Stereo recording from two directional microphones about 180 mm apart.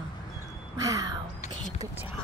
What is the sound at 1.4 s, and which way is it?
Whispering, 40° left (ahead or behind).